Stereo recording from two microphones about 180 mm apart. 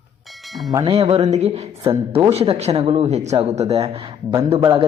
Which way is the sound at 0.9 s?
35° right (ahead or behind).